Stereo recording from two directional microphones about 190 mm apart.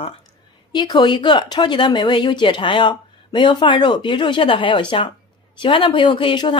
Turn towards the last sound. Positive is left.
turn(degrees=25)  # may be behind; listen again after turning